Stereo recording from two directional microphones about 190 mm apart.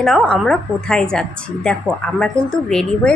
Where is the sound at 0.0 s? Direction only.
Centre (ahead or behind).